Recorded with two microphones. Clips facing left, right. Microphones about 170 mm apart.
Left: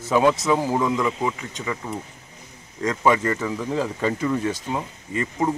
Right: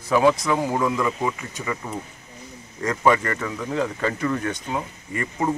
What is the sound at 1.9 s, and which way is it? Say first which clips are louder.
Speech: left 1 dB; 10° right (ahead or behind).